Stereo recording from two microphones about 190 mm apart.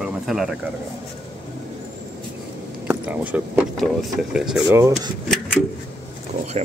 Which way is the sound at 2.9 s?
10° right (ahead or behind).